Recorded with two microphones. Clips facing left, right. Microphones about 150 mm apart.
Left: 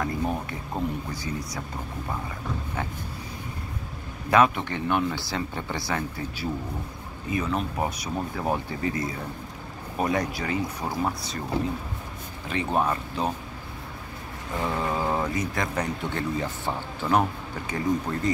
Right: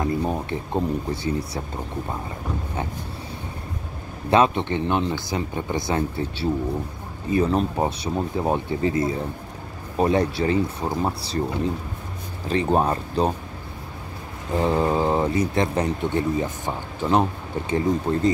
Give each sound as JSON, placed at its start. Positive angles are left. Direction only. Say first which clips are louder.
{"t": 0.0, "sound": "speech", "louder": "right 4 dB", "side_deg": -25}
{"t": 4.3, "sound": "speech", "louder": "right 3 dB", "side_deg": -25}
{"t": 12.4, "sound": "speech", "louder": "right 5 dB", "side_deg": -35}
{"t": 14.6, "sound": "speech", "louder": "right 7 dB", "side_deg": -30}